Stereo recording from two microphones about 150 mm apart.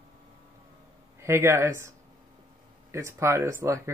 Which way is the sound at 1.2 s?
15° right (ahead or behind).